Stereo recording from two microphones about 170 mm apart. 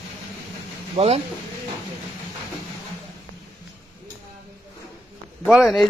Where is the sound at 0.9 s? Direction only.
35° right (ahead or behind).